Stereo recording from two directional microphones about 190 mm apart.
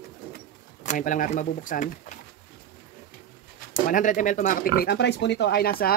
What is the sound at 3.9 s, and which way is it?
Speech, 45° left (ahead or behind).